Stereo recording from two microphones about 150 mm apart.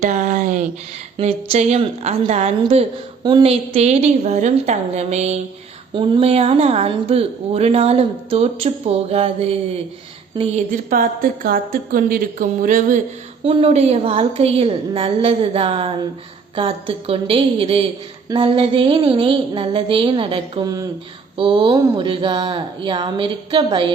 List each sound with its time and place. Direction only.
0.0 s a sound: 55° right (ahead or behind)
1.2 s a woman's voice: 45° right (ahead or behind)
5.9 s speech: 35° right (ahead or behind)
10.7 s speech: 65° right (ahead or behind)
13.4 s speech: 40° right (ahead or behind)